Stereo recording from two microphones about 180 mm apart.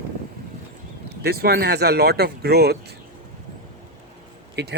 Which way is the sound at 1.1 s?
60° right (ahead or behind).